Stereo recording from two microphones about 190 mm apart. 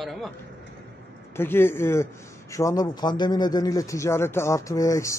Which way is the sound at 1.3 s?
10° left (ahead or behind).